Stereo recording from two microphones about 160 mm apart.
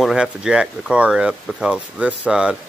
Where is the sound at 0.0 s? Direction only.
5° right (ahead or behind).